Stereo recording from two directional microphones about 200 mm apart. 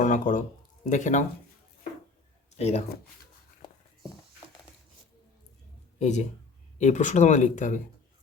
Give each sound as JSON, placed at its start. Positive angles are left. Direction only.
{"t": 0.0, "sound": "a sound", "side_deg": 40}
{"t": 0.9, "sound": "speech", "side_deg": 40}
{"t": 2.6, "sound": "speech", "side_deg": 35}
{"t": 6.0, "sound": "speech", "side_deg": 35}